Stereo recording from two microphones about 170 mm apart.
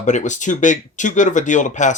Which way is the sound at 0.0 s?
45° left (ahead or behind).